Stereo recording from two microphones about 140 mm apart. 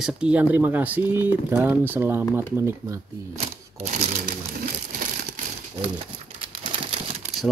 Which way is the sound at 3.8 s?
55° right (ahead or behind).